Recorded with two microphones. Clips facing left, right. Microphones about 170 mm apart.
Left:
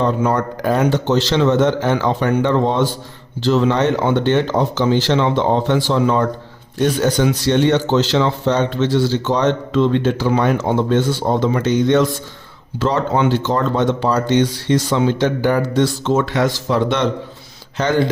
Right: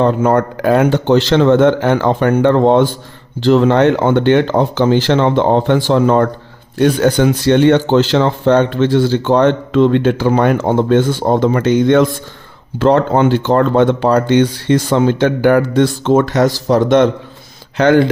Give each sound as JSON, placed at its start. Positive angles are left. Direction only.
{"t": 0.0, "sound": "speech", "side_deg": -55}
{"t": 17.7, "sound": "speech", "side_deg": -60}